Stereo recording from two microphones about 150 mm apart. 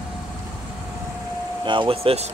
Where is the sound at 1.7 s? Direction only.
35° right (ahead or behind).